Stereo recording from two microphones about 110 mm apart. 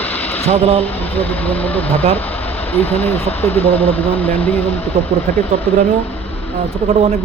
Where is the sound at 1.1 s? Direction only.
15° left (ahead or behind).